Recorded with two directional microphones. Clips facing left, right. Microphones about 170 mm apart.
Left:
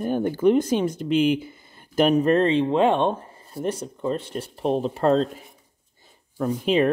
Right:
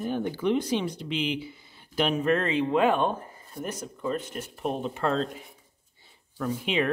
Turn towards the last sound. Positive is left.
turn(degrees=40)  # may be behind; listen again after turning